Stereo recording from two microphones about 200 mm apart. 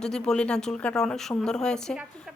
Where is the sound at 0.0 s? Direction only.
5° left (ahead or behind).